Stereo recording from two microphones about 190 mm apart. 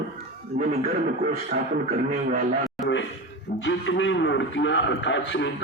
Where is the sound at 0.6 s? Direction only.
50° right (ahead or behind).